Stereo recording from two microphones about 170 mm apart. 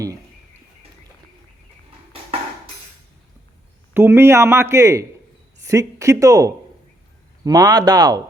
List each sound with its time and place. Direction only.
3.9 s a man's voice: 15° right (ahead or behind)